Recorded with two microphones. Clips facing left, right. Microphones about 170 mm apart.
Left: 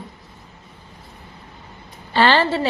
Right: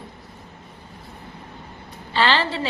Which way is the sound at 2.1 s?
45° left (ahead or behind).